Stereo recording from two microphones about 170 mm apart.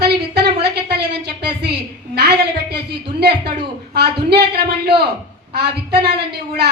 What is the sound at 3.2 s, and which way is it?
A woman's voice, 75° right (ahead or behind).